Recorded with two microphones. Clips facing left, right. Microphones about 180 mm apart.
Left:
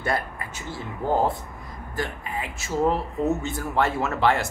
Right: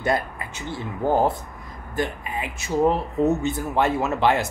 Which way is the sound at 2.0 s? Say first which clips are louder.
Right 3 dB; 20° right (ahead or behind).